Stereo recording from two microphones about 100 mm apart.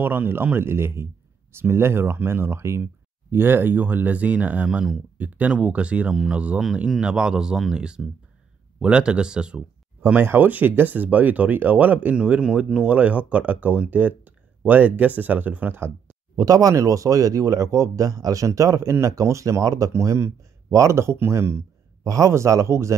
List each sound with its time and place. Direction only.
0.0 s speech: 20° right (ahead or behind)
4.6 s speech: 5° right (ahead or behind)
5.1 s speech: 15° right (ahead or behind)
16.3 s speech: 35° right (ahead or behind)